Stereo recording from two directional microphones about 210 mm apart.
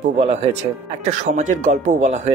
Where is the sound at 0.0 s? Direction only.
30° right (ahead or behind).